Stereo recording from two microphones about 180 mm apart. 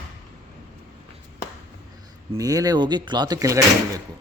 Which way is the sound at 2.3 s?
20° right (ahead or behind).